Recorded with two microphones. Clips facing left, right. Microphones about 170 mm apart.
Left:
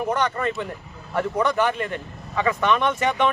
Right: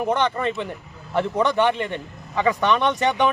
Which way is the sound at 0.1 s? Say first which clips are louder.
Right 2 dB; 25° right (ahead or behind).